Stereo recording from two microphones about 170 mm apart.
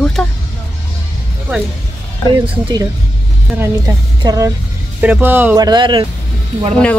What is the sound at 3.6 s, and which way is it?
Speech, 20° right (ahead or behind).